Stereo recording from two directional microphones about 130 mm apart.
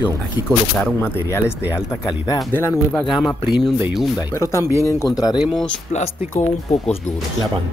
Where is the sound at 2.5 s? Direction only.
15° left (ahead or behind).